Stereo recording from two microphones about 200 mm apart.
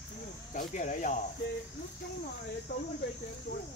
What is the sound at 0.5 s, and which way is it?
Speech, 40° left (ahead or behind).